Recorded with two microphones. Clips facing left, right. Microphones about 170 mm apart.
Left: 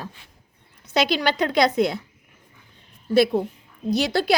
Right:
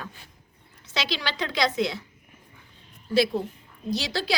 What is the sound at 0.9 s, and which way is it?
A woman's voice, 50° left (ahead or behind).